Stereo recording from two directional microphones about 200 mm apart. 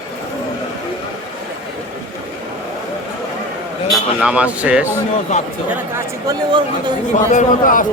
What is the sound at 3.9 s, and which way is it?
Speech, 5° right (ahead or behind).